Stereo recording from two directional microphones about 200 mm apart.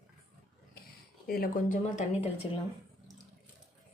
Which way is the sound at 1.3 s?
45° left (ahead or behind).